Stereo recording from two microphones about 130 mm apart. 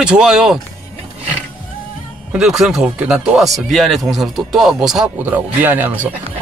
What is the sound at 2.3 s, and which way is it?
Speech, 5° right (ahead or behind).